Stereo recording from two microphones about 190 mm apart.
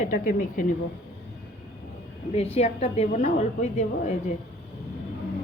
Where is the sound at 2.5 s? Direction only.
35° left (ahead or behind).